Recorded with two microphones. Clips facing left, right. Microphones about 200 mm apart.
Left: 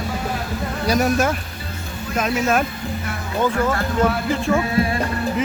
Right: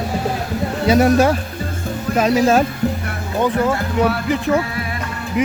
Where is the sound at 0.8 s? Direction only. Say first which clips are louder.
Right 6 dB; 25° right (ahead or behind).